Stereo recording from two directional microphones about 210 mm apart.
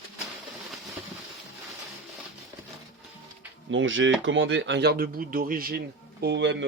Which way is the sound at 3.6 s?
65° right (ahead or behind).